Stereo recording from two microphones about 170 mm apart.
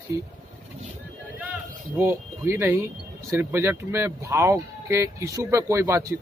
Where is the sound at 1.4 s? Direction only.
10° right (ahead or behind).